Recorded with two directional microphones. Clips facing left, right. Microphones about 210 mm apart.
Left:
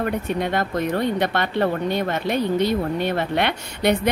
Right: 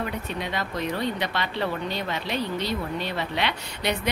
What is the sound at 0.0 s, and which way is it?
A woman's voice, 50° left (ahead or behind).